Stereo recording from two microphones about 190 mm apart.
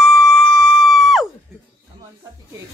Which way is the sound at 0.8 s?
Centre (ahead or behind).